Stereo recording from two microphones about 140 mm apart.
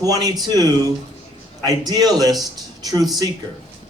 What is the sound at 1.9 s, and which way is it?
Speech, 30° right (ahead or behind).